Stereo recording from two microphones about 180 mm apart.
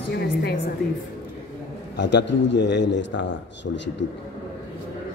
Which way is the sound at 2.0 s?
75° left (ahead or behind).